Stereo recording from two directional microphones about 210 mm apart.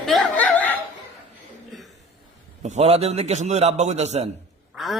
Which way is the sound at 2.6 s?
30° right (ahead or behind).